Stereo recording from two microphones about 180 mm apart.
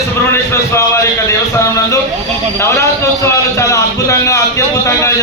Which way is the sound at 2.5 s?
15° left (ahead or behind).